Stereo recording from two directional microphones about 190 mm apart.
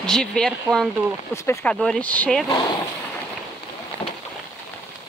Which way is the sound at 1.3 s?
15° left (ahead or behind).